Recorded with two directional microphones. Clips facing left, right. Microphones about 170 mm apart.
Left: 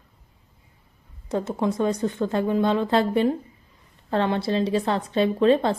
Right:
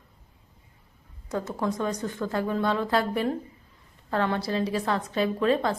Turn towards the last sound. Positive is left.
turn(degrees=25)  # may be behind; listen again after turning